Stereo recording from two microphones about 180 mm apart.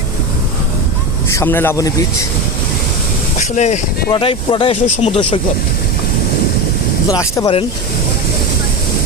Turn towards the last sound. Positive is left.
turn(degrees=20)  # may be behind; listen again after turning